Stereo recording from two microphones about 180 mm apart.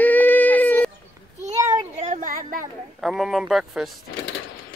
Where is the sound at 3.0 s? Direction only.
Centre (ahead or behind).